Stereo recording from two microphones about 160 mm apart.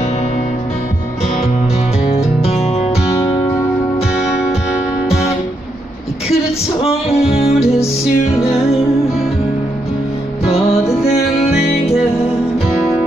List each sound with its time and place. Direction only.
2.1 s music: 40° left (ahead or behind)
3.3 s music: 20° left (ahead or behind)
6.8 s music: 40° left (ahead or behind)
8.0 s music: centre (ahead or behind)
10.4 s music: 40° left (ahead or behind)